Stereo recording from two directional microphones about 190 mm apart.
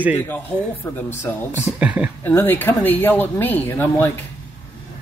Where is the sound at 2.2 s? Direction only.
10° left (ahead or behind).